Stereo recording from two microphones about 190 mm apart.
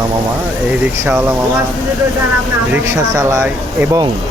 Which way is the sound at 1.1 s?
10° right (ahead or behind).